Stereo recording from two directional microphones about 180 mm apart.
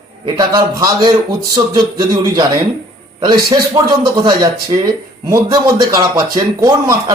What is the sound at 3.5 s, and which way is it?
A man's voice, 20° right (ahead or behind).